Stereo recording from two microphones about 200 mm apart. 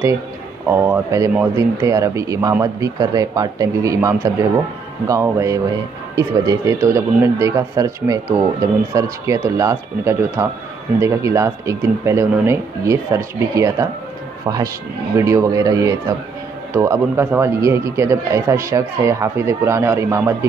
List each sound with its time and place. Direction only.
0.7 s a man's voice: 10° right (ahead or behind)